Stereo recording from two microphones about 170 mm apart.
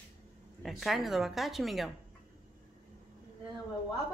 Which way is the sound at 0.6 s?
Centre (ahead or behind).